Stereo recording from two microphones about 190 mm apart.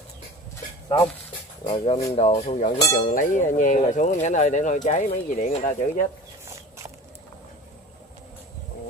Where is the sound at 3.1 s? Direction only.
45° left (ahead or behind).